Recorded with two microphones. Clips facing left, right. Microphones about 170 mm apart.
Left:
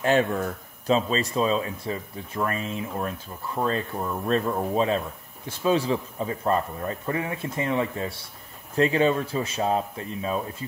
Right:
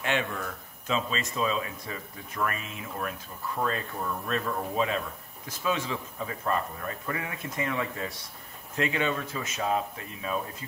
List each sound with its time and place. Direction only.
0.0 s speech: 40° left (ahead or behind)